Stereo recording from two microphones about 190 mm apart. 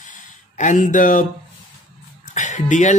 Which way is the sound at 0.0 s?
40° left (ahead or behind).